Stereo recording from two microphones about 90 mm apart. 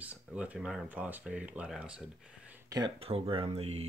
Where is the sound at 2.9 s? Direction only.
90° right.